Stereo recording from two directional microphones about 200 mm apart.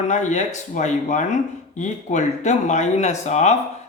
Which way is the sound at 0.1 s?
35° left (ahead or behind).